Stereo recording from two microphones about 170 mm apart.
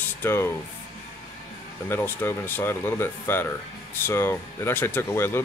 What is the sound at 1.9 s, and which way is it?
Speech, 15° left (ahead or behind).